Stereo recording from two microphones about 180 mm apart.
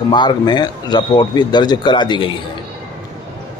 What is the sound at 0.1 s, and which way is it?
Speech, 25° left (ahead or behind).